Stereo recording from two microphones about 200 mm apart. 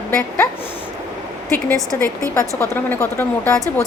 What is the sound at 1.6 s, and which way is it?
Speech, 15° left (ahead or behind).